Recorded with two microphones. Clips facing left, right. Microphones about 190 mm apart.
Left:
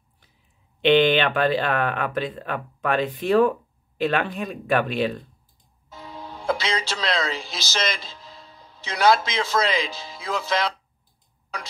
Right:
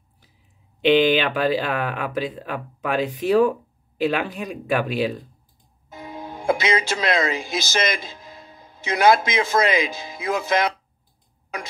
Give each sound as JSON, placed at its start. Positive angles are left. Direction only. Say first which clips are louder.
{"t": 0.7, "sound": "speech", "louder": "right 1 dB", "side_deg": -5}
{"t": 5.9, "sound": "music", "louder": "right 4 dB", "side_deg": -50}
{"t": 6.6, "sound": "speech", "louder": "right 5 dB", "side_deg": -50}